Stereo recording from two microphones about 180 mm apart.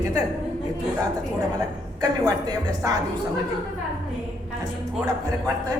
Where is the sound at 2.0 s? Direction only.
20° right (ahead or behind).